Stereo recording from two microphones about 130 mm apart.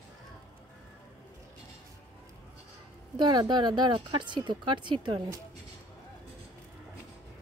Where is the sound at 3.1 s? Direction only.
35° right (ahead or behind).